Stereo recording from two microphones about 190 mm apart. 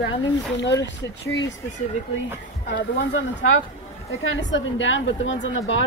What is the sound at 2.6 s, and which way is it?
Speech, 70° left (ahead or behind).